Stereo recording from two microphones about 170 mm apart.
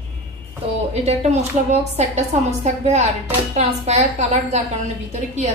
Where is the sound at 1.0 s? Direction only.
40° right (ahead or behind).